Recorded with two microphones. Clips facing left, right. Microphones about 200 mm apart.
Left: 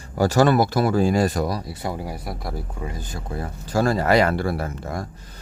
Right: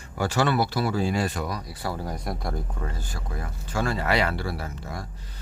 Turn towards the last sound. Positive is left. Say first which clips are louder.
# left 7 dB
turn(degrees=50)  # may be behind; listen again after turning